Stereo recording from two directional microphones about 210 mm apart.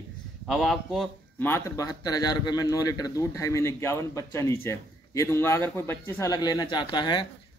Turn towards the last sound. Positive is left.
turn(degrees=20)  # may be behind; listen again after turning